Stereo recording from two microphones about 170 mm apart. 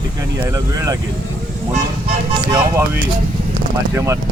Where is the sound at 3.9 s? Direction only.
15° right (ahead or behind).